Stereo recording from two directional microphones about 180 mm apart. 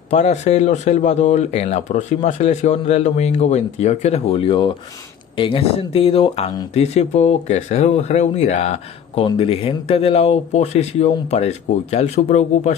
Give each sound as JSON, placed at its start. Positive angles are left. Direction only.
{"t": 0.1, "sound": "speech", "side_deg": 40}